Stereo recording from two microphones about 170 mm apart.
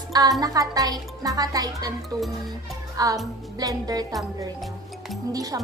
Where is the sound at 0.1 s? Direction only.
20° right (ahead or behind).